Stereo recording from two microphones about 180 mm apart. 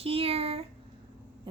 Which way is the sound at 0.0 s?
35° right (ahead or behind).